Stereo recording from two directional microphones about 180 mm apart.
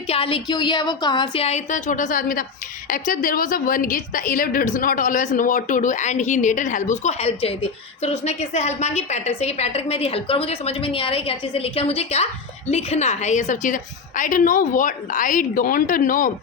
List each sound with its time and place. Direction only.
0.1 s a woman's voice: 30° left (ahead or behind); by 16.3 s 50° left (ahead or behind)